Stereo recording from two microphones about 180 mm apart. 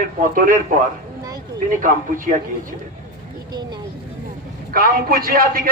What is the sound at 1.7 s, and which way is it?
Speech, 45° right (ahead or behind).